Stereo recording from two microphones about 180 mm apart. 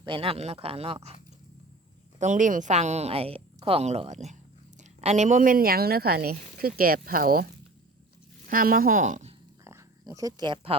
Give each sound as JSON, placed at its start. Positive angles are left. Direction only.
{"t": 0.0, "sound": "a woman's voice", "side_deg": -30}
{"t": 2.1, "sound": "a woman's voice", "side_deg": -45}
{"t": 8.4, "sound": "speech", "side_deg": -50}
{"t": 9.6, "sound": "a sound", "side_deg": -20}